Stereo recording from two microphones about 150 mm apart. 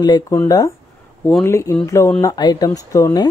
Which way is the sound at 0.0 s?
25° left (ahead or behind).